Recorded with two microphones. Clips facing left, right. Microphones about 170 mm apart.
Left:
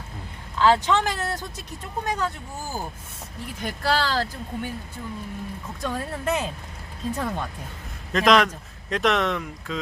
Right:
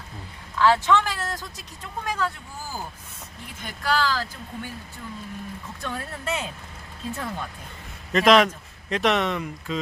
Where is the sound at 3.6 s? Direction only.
35° left (ahead or behind).